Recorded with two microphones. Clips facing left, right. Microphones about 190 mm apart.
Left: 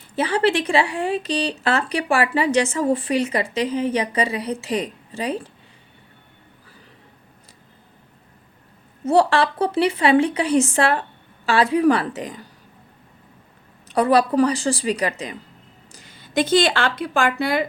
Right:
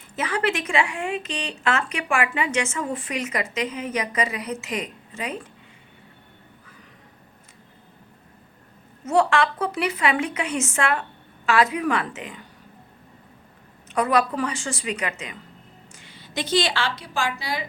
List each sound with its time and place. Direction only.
0.2 s speech: 30° left (ahead or behind)
9.0 s speech: 35° left (ahead or behind)
13.8 s a woman's voice: 35° left (ahead or behind); by 17.7 s 55° left (ahead or behind)